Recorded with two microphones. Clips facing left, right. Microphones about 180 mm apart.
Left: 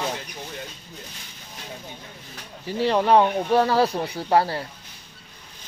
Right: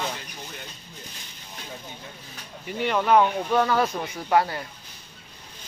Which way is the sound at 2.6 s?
30° left (ahead or behind).